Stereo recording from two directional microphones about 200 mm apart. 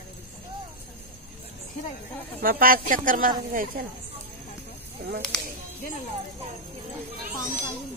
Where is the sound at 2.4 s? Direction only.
45° right (ahead or behind).